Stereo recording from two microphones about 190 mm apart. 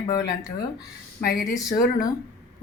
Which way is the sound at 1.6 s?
20° left (ahead or behind).